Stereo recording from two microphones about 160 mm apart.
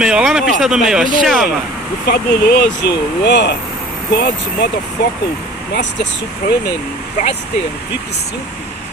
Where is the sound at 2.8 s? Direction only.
90° left.